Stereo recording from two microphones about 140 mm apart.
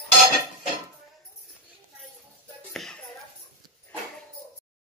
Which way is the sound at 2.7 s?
5° left (ahead or behind).